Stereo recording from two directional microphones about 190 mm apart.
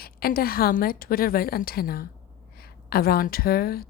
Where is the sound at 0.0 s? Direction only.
50° left (ahead or behind).